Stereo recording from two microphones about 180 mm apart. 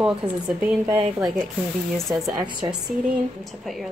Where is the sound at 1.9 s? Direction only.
Centre (ahead or behind).